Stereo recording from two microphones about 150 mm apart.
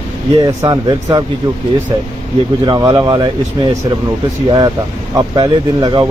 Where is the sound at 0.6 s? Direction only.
25° right (ahead or behind).